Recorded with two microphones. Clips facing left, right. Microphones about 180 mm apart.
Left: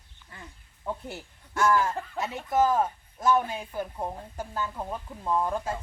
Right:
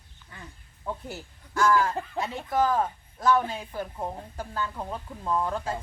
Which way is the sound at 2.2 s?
5° left (ahead or behind).